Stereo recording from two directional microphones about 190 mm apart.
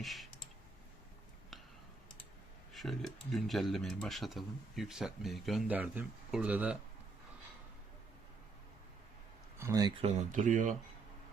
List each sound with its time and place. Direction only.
0.0 s clicking: centre (ahead or behind)
2.7 s speech: centre (ahead or behind)
9.6 s speech: 15° right (ahead or behind)
10.0 s speech: 40° right (ahead or behind)